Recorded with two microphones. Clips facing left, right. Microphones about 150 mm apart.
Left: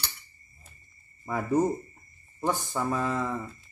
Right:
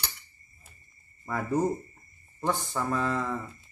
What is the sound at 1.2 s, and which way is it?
Speech, 10° left (ahead or behind).